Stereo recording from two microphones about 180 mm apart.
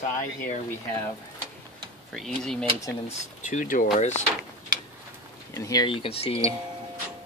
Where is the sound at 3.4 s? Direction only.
45° left (ahead or behind).